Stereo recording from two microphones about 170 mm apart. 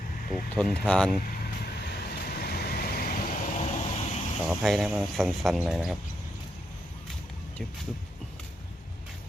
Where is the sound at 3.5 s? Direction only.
40° left (ahead or behind).